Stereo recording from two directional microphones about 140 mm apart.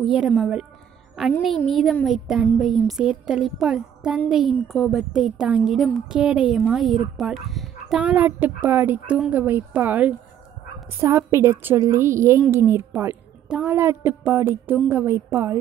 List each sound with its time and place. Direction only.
0.4 s speech: 5° right (ahead or behind)
8.0 s a woman's voice: 10° right (ahead or behind)